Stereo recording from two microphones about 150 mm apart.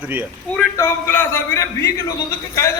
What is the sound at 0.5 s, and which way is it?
A man's voice, 15° left (ahead or behind).